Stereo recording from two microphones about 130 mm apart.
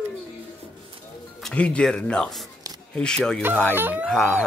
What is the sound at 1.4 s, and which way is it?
Speech, 10° left (ahead or behind).